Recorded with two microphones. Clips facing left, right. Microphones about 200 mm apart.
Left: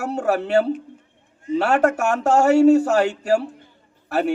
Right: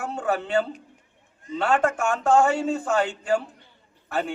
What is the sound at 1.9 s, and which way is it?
Speech, 70° left (ahead or behind).